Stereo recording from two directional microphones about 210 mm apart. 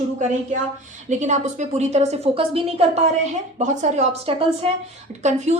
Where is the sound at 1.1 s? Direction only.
35° right (ahead or behind).